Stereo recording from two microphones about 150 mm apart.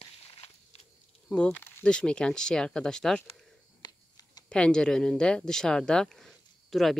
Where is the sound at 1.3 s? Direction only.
10° left (ahead or behind).